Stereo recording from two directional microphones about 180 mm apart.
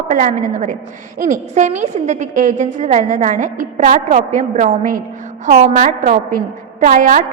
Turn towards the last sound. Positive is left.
turn(degrees=-50)  # may be behind; listen again after turning